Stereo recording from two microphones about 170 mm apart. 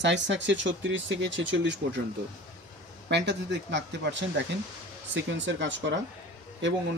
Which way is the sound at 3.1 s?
90° right.